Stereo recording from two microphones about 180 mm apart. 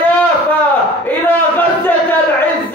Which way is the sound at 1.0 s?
10° left (ahead or behind).